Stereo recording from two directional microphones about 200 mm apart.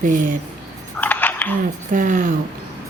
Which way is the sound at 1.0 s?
10° left (ahead or behind).